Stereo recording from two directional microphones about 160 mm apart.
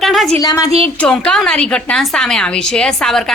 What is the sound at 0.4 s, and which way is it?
Speech, 20° left (ahead or behind).